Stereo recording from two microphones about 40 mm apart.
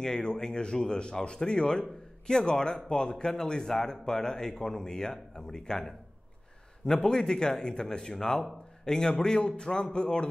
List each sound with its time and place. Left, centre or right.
0.0 s speech: centre